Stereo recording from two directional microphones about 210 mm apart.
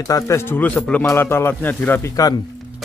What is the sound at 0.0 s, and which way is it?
Speech, 15° left (ahead or behind).